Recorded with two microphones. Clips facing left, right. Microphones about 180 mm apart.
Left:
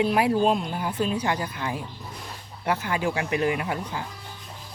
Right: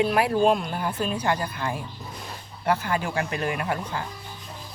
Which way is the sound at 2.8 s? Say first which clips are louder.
Even; 15° left (ahead or behind).